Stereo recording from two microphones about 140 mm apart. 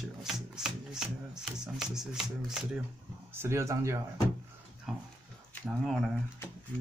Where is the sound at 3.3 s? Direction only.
20° right (ahead or behind).